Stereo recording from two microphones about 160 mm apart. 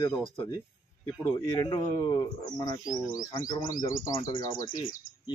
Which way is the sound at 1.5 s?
25° left (ahead or behind).